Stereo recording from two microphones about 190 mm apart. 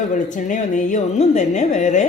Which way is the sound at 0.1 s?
40° left (ahead or behind).